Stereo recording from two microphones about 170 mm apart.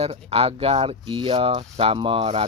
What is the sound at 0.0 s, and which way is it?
Speech, 35° right (ahead or behind).